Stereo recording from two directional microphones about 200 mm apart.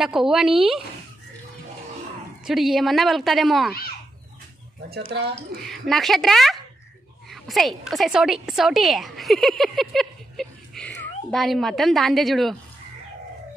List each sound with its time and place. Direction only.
0.0 s a woman's voice: centre (ahead or behind)
2.4 s a woman's voice: centre (ahead or behind)
4.8 s speech: 55° right (ahead or behind)
5.6 s a woman's voice: centre (ahead or behind)